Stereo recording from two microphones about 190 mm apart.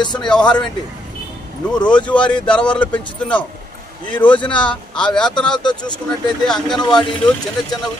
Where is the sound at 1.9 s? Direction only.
5° left (ahead or behind).